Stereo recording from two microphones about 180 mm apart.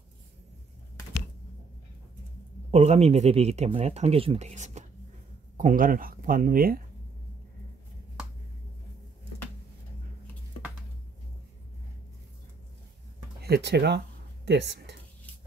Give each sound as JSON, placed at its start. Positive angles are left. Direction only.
{"t": 2.7, "sound": "speech", "side_deg": -35}
{"t": 13.4, "sound": "speech", "side_deg": -70}